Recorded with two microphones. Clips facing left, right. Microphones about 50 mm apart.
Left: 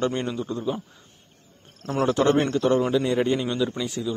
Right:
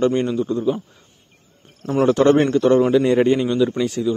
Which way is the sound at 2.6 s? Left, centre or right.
Centre.